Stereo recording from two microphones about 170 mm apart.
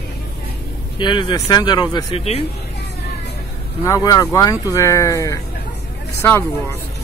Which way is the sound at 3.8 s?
20° left (ahead or behind).